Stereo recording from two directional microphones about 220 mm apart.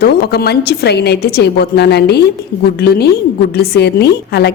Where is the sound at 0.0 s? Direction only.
45° left (ahead or behind).